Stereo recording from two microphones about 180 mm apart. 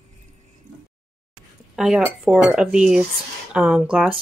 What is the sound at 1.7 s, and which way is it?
Speech, 5° right (ahead or behind).